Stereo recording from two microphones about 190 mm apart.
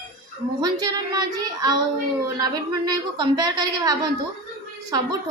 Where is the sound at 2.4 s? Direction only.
20° right (ahead or behind).